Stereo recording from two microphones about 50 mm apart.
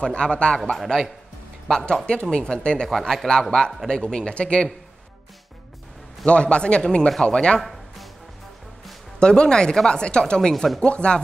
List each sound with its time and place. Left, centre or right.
0.0 s speech: left
1.7 s a man's voice: centre
2.9 s a man's voice: centre; by 4.6 s left
6.2 s a man's voice: left
9.2 s a man's voice: centre
10.5 s speech: centre
10.8 s speech: centre